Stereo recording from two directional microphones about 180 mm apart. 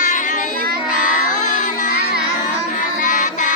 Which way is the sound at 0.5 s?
55° right (ahead or behind).